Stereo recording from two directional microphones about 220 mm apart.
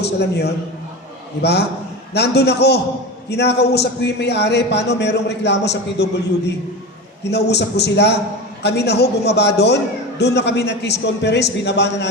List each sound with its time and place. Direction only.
0.0 s a man's voice: 50° left (ahead or behind)
7.3 s a man's voice: 50° left (ahead or behind)